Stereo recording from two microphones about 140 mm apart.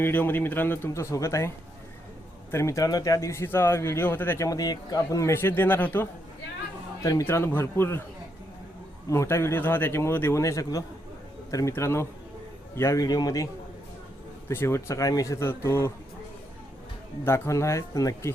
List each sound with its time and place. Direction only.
0.0 s a man's voice: 15° left (ahead or behind)
7.0 s a man's voice: 25° left (ahead or behind)
9.0 s a man's voice: 20° left (ahead or behind)
17.2 s a man's voice: 20° left (ahead or behind)